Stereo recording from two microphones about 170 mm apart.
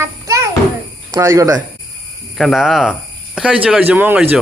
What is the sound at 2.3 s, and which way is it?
A child's voice, centre (ahead or behind).